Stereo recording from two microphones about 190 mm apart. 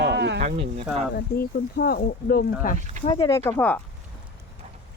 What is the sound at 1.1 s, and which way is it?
Speech, 55° left (ahead or behind).